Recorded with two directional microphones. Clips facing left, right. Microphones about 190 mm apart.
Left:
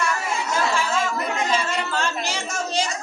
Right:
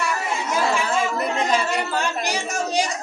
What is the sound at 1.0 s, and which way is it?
Chatter, 15° right (ahead or behind).